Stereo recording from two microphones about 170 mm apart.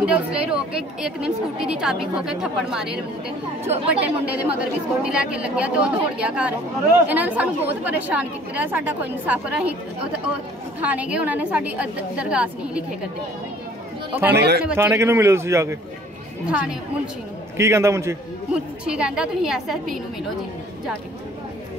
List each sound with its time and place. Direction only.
0.0 s a woman's voice: 5° right (ahead or behind)
3.6 s speech: 35° right (ahead or behind)
5.0 s speech: 5° right (ahead or behind)
10.8 s speech: 10° right (ahead or behind)
14.3 s speech: 75° right (ahead or behind)
14.8 s speech: 15° right (ahead or behind)
16.4 s speech: 5° right (ahead or behind)
18.5 s a woman's voice: 5° right (ahead or behind)